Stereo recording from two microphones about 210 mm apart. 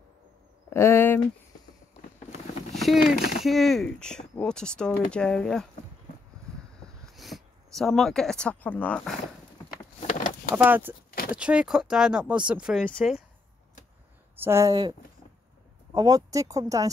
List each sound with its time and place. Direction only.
0.7 s speech: 10° left (ahead or behind)
2.7 s speech: centre (ahead or behind)
7.2 s speech: centre (ahead or behind)
9.9 s a sound: 35° left (ahead or behind)
10.5 s speech: 10° right (ahead or behind)
14.4 s speech: 15° right (ahead or behind)